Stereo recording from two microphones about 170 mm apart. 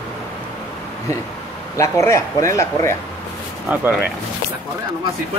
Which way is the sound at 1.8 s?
15° left (ahead or behind).